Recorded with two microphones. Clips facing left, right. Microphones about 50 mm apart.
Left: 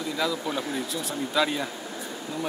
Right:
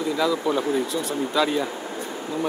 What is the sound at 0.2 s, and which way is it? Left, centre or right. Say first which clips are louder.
Speech: right 5 dB; centre.